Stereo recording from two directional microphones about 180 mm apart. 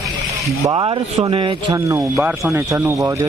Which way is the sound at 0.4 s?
25° right (ahead or behind).